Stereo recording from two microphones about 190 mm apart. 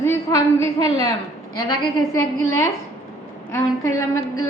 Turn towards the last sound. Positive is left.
turn(degrees=15)  # may be behind; listen again after turning